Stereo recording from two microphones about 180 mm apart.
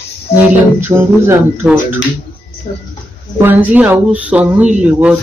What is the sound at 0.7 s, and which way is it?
Speech, 15° right (ahead or behind).